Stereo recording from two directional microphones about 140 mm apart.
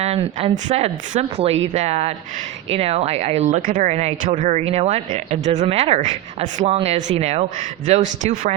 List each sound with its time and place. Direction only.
0.0 s speech: 45° right (ahead or behind)
0.5 s speech: 55° right (ahead or behind)
3.7 s speech: 75° right (ahead or behind)
3.9 s a man's voice: 50° right (ahead or behind)